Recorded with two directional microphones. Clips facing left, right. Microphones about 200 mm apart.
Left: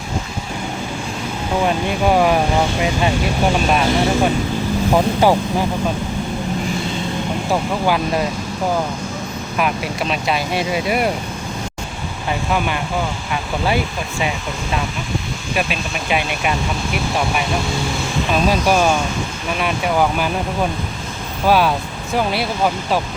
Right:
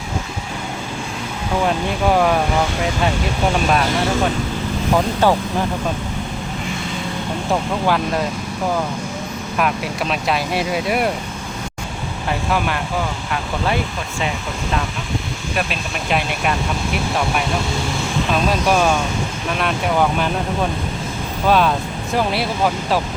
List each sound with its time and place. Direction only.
1.6 s speech: 5° left (ahead or behind)
3.7 s speech: 5° left (ahead or behind)
7.5 s speech: 5° left (ahead or behind)
9.6 s speech: centre (ahead or behind)
12.3 s speech: centre (ahead or behind)
15.5 s speech: 5° left (ahead or behind)
18.3 s speech: 5° left (ahead or behind)
21.4 s speech: 5° left (ahead or behind)